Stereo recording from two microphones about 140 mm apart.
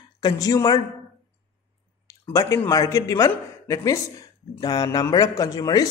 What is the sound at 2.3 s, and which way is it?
A man's voice, 20° left (ahead or behind).